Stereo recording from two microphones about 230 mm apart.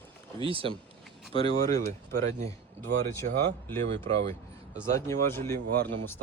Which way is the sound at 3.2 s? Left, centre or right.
Right.